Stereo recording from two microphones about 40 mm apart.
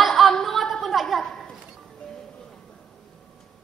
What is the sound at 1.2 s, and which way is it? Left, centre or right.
Speech, centre.